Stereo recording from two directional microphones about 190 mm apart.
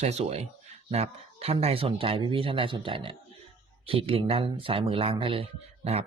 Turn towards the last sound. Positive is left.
turn(degrees=-30)  # may be behind; listen again after turning